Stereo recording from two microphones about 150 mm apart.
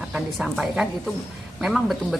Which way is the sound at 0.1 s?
Centre (ahead or behind).